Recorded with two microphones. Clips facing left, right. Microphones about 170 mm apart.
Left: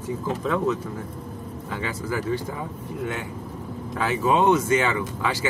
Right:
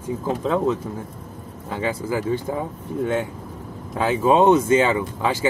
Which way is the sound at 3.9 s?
25° right (ahead or behind).